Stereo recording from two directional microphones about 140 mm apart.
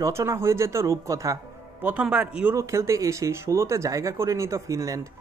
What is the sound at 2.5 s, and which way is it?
Speech, 20° right (ahead or behind).